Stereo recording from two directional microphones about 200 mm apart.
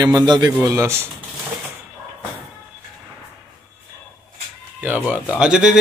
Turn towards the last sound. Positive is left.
turn(degrees=-5)  # may be behind; listen again after turning